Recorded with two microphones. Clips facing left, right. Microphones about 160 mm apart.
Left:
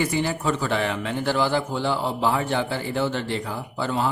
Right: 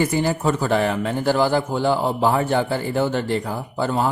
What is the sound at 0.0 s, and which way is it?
A man's voice, 45° right (ahead or behind).